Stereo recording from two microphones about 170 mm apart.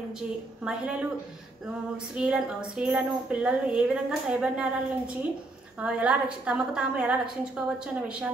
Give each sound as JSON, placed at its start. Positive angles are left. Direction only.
{"t": 0.7, "sound": "a woman's voice", "side_deg": -5}
{"t": 2.1, "sound": "a woman's voice", "side_deg": -5}